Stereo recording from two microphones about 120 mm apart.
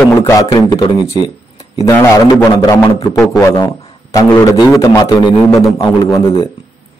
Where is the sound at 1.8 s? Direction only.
25° left (ahead or behind).